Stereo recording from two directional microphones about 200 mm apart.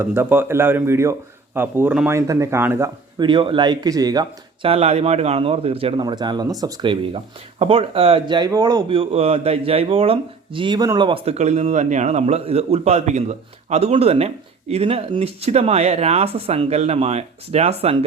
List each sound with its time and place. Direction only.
0.0 s speech: 10° right (ahead or behind); by 17.9 s 30° right (ahead or behind)